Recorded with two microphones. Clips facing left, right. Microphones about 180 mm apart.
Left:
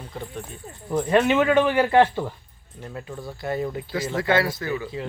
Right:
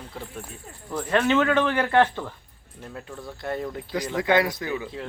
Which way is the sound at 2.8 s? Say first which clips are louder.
Left 3 dB; centre (ahead or behind).